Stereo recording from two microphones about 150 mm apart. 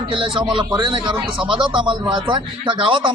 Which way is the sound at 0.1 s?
35° right (ahead or behind).